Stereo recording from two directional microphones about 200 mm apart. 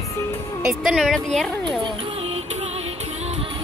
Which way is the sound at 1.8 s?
30° right (ahead or behind).